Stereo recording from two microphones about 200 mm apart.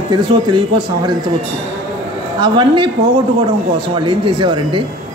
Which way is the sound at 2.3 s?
20° right (ahead or behind).